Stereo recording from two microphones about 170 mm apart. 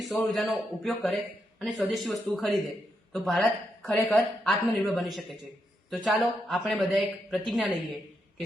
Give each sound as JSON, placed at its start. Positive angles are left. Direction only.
{"t": 0.0, "sound": "speech", "side_deg": 0}